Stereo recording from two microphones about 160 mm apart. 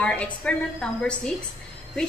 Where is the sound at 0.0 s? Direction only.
10° left (ahead or behind).